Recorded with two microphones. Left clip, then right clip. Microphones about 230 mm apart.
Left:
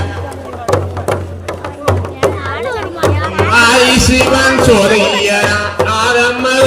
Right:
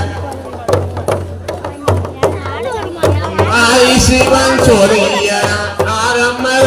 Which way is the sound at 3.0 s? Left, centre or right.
Left.